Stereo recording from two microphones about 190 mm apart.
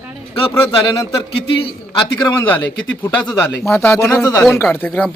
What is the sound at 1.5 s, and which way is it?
Speech, 25° left (ahead or behind).